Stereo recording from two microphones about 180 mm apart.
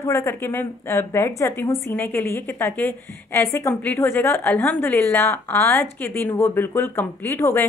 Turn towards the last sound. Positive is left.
turn(degrees=10)  # may be behind; listen again after turning